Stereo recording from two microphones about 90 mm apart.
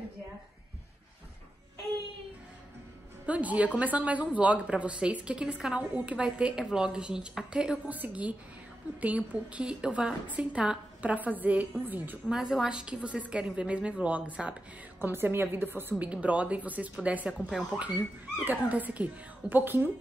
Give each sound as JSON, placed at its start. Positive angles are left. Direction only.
{"t": 3.3, "sound": "a woman's voice", "side_deg": -15}
{"t": 12.3, "sound": "a woman's voice", "side_deg": -5}
{"t": 17.3, "sound": "speech", "side_deg": 5}
{"t": 17.7, "sound": "a woman's voice", "side_deg": -15}